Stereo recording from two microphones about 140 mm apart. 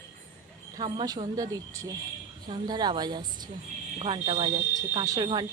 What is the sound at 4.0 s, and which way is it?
Speech, 40° right (ahead or behind).